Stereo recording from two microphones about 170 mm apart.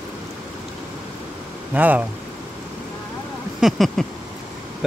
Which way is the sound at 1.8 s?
10° right (ahead or behind).